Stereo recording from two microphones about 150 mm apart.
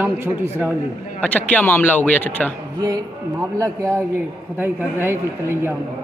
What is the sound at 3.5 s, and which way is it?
Speech, 20° right (ahead or behind).